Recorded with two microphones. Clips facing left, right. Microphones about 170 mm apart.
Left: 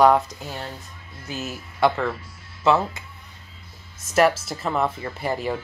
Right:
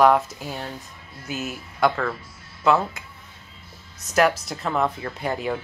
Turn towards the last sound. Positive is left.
turn(degrees=0)  # may be behind; listen again after turning